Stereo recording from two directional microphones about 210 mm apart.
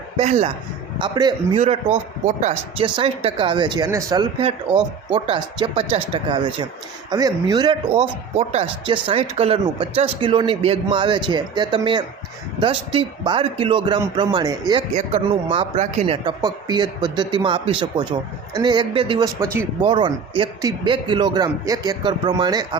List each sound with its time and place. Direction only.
0.2 s speech: 30° right (ahead or behind)